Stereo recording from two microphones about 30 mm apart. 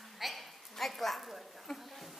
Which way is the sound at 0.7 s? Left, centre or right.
Centre.